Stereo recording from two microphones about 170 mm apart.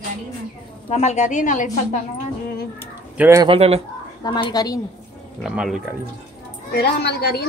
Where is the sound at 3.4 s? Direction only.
35° right (ahead or behind).